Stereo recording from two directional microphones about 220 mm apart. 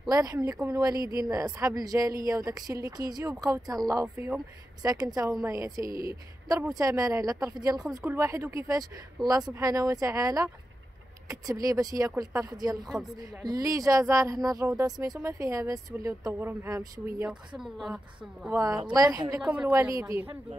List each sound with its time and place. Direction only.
0.1 s a woman's voice: 15° right (ahead or behind)
5.9 s a woman's voice: 40° right (ahead or behind)
6.5 s a woman's voice: 15° right (ahead or behind)
18.6 s a woman's voice: 20° right (ahead or behind)
19.4 s a woman's voice: 5° right (ahead or behind)